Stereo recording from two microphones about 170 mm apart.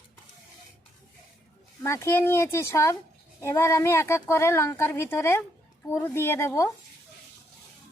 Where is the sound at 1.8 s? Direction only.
15° left (ahead or behind).